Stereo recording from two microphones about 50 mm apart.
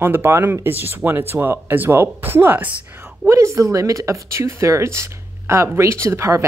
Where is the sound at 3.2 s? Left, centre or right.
Right.